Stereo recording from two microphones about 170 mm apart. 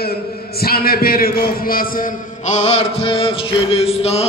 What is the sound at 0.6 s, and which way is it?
A man's voice, 65° left (ahead or behind).